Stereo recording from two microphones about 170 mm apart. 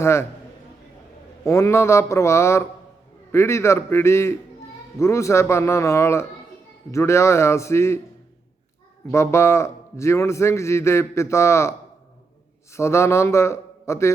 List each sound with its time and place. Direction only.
0.0 s a man's voice: 15° left (ahead or behind)
1.5 s a man's voice: 15° left (ahead or behind)
9.1 s a man's voice: 15° left (ahead or behind)
12.7 s a man's voice: 15° left (ahead or behind)